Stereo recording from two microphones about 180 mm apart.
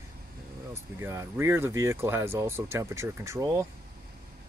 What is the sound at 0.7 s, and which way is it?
Speech, 15° right (ahead or behind).